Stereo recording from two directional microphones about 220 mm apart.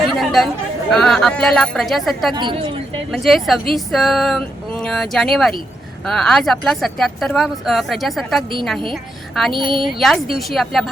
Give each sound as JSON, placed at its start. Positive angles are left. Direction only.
{"t": 0.2, "sound": "speech", "side_deg": 0}
{"t": 2.3, "sound": "a woman's voice", "side_deg": -20}
{"t": 3.1, "sound": "a woman's voice", "side_deg": 0}
{"t": 9.5, "sound": "a woman's voice", "side_deg": -20}
{"t": 9.8, "sound": "speech", "side_deg": 0}